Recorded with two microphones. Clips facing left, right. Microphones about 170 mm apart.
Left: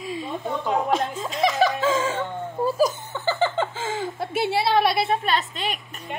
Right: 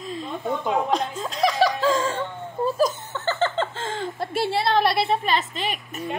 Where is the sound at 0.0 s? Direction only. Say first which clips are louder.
Left 1 dB; 5° left (ahead or behind).